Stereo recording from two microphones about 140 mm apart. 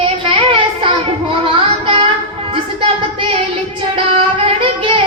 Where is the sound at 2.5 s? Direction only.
40° right (ahead or behind).